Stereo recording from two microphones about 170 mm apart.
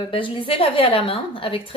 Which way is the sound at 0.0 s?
30° left (ahead or behind).